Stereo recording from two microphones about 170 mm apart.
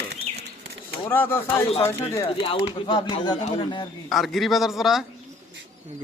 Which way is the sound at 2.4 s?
35° left (ahead or behind).